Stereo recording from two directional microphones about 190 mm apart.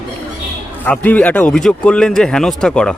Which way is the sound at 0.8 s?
10° left (ahead or behind).